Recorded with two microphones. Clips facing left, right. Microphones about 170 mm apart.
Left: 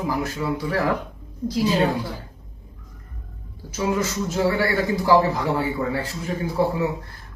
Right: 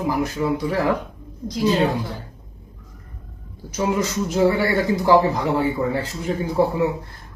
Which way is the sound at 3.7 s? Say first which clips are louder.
Right 2 dB; 20° right (ahead or behind).